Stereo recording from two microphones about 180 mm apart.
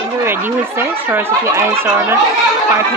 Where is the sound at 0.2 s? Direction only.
10° right (ahead or behind).